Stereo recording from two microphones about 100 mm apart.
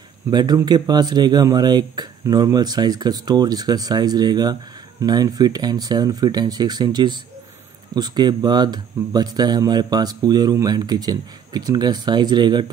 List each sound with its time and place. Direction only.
0.3 s speech: 45° right (ahead or behind)